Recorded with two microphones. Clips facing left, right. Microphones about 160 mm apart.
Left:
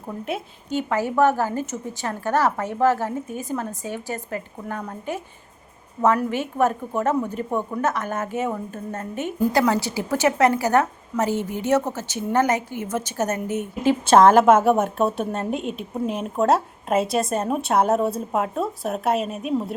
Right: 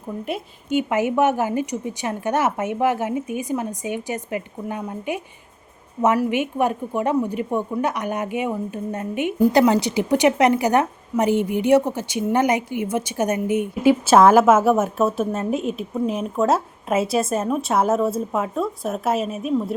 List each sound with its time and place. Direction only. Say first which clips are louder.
0.7 s a woman's voice: right 3 dB; 15° right (ahead or behind); by 19.5 s centre (ahead or behind)